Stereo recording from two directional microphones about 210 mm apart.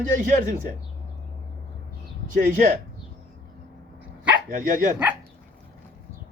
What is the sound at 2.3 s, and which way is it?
Speech, 40° right (ahead or behind).